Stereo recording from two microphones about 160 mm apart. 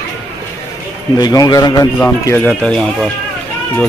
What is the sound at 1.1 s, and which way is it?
Speech, 25° left (ahead or behind).